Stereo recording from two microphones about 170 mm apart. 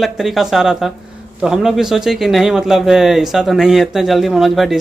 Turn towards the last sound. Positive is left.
turn(degrees=0)  # may be behind; listen again after turning